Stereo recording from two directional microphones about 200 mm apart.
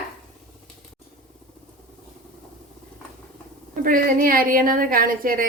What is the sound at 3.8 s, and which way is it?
A woman's voice, 45° right (ahead or behind).